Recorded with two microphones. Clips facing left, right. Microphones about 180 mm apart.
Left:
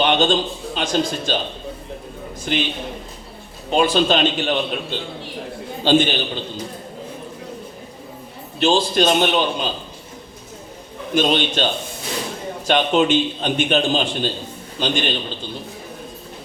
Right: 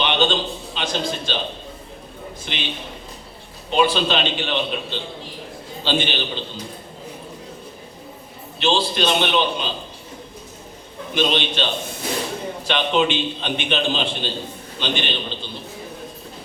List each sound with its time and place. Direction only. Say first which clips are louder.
0.0 s a man's voice: left 3 dB; 45° left (ahead or behind)
2.4 s a man's voice: left 10 dB; 45° left (ahead or behind)
3.7 s a man's voice: left 2 dB; 45° left (ahead or behind)
8.5 s a man's voice: left 4 dB; 45° left (ahead or behind)
11.1 s a man's voice: left 3 dB; 45° left (ahead or behind)